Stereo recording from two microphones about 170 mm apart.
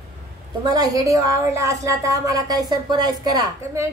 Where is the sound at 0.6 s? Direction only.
20° right (ahead or behind).